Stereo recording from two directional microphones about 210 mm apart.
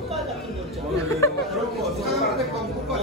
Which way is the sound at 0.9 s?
15° left (ahead or behind).